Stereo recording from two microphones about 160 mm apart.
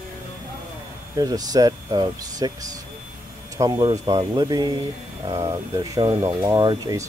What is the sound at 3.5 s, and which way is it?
Speech, 20° right (ahead or behind).